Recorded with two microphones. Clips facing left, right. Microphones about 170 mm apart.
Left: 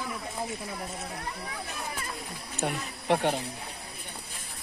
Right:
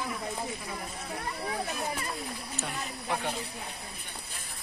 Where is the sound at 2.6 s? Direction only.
65° left (ahead or behind).